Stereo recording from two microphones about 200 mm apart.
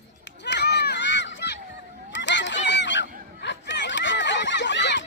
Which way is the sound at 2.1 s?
65° left (ahead or behind).